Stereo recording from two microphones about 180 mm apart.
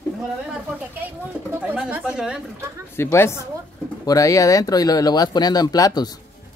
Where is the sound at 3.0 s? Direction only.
15° left (ahead or behind).